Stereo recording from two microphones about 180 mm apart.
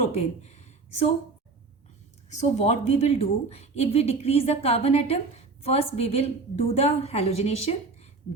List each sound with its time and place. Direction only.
0.0 s speech: 40° left (ahead or behind)
2.4 s a woman's voice: 40° left (ahead or behind)